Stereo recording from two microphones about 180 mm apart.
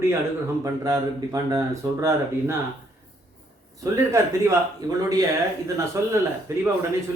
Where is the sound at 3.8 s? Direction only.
15° right (ahead or behind).